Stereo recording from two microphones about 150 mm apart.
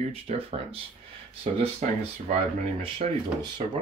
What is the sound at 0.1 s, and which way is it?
Speech, 40° right (ahead or behind).